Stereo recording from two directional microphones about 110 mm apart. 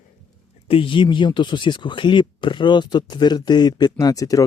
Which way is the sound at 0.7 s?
50° left (ahead or behind).